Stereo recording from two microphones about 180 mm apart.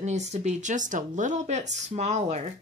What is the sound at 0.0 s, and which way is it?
Speech, 40° right (ahead or behind).